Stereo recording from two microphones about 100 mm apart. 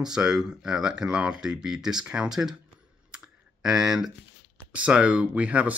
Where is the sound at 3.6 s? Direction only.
5° right (ahead or behind).